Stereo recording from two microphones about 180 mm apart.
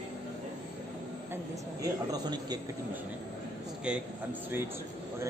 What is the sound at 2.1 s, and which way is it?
Speech, 20° right (ahead or behind).